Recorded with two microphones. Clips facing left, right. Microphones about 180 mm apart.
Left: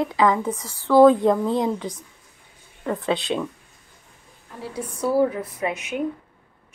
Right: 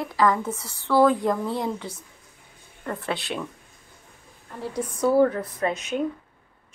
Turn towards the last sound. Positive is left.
turn(degrees=10)  # may be behind; listen again after turning